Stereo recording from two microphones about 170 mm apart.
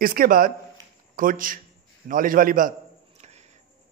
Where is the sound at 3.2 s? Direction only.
40° right (ahead or behind).